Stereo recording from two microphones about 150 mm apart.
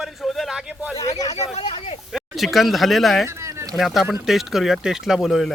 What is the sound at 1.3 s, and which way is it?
Speech, 45° left (ahead or behind).